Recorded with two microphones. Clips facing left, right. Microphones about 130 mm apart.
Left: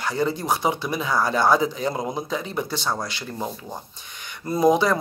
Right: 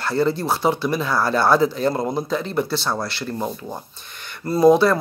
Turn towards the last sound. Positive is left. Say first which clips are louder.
# right 4 dB
turn(degrees=15)  # may be behind; listen again after turning